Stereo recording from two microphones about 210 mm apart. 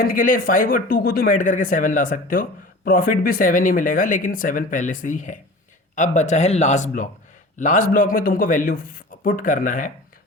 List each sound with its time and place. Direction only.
0.0 s speech: 40° left (ahead or behind)